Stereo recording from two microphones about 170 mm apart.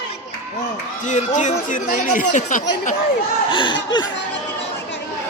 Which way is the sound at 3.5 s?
30° left (ahead or behind).